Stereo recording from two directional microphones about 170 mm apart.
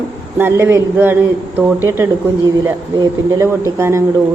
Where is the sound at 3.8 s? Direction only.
15° right (ahead or behind).